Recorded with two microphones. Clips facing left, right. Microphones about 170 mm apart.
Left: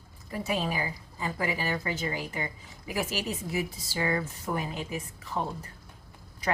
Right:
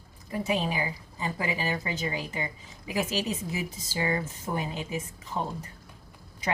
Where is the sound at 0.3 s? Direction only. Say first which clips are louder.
Right 2 dB; 20° right (ahead or behind).